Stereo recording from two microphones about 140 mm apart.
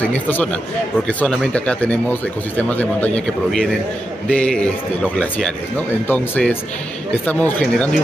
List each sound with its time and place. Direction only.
0.0 s a man's voice: 10° left (ahead or behind)
4.4 s a man's voice: 10° left (ahead or behind)